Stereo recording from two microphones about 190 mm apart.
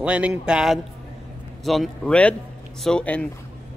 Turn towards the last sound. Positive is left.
turn(degrees=5)  # may be behind; listen again after turning